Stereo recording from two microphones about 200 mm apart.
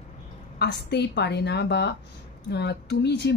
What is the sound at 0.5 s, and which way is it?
Speech, 55° left (ahead or behind).